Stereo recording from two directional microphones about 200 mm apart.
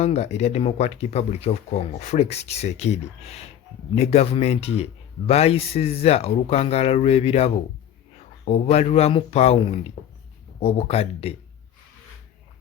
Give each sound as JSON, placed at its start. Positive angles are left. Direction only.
{"t": 0.0, "sound": "speech", "side_deg": 35}